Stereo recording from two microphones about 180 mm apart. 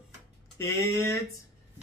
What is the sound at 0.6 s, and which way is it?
Speech, 15° left (ahead or behind).